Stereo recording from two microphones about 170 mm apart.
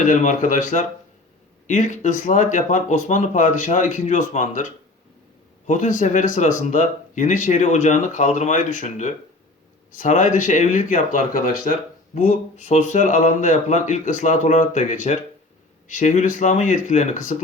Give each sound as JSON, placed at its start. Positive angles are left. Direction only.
{"t": 0.0, "sound": "speech", "side_deg": 45}